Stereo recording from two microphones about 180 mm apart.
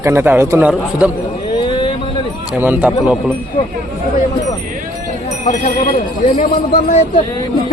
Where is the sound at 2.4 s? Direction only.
10° right (ahead or behind).